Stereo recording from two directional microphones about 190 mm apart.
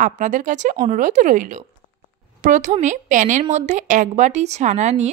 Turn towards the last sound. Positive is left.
turn(degrees=-35)  # may be behind; listen again after turning